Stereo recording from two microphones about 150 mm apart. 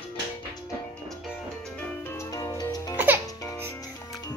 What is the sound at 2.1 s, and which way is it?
Music, 20° left (ahead or behind).